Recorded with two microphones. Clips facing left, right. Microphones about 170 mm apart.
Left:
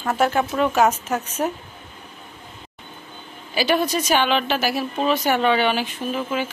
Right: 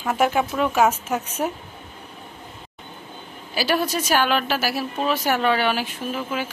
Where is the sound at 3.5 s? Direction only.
5° right (ahead or behind).